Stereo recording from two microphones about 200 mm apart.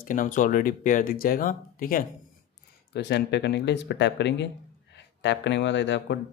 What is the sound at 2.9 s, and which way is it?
Speech, 60° left (ahead or behind).